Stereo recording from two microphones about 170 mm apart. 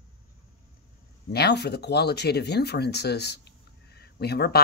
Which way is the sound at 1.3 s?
75° left (ahead or behind).